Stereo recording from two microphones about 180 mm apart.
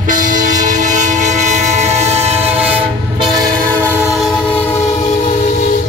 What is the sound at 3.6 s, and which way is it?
Train, 10° left (ahead or behind).